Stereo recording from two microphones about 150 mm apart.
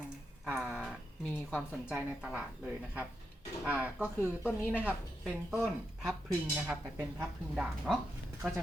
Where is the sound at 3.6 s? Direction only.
10° right (ahead or behind).